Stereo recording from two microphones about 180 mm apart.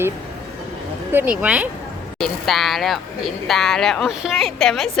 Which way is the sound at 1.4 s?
10° right (ahead or behind).